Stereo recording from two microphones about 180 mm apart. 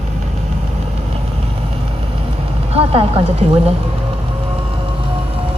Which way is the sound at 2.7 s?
35° right (ahead or behind).